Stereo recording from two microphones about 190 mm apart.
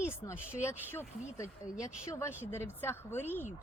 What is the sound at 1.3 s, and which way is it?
Speech, 15° left (ahead or behind).